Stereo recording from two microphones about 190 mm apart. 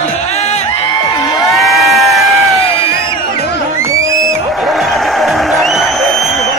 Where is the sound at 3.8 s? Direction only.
15° right (ahead or behind).